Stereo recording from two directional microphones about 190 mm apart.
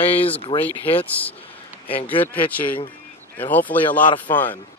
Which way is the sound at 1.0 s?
10° left (ahead or behind).